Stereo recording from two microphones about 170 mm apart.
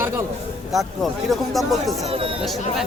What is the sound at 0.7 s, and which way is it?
Speech, centre (ahead or behind).